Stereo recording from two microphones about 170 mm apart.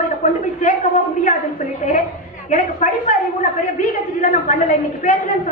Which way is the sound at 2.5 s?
45° left (ahead or behind).